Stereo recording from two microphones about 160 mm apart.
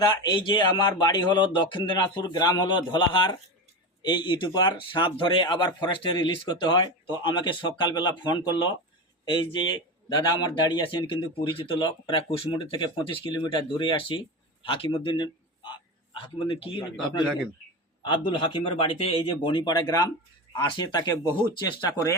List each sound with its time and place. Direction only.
0.0 s a man's voice: 30° left (ahead or behind)
18.3 s a man's voice: 30° left (ahead or behind)